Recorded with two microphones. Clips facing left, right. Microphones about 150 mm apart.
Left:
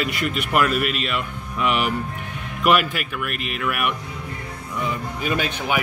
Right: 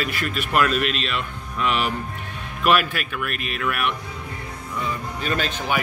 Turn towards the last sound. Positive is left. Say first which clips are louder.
# left 1 dB
turn(degrees=10)  # may be behind; listen again after turning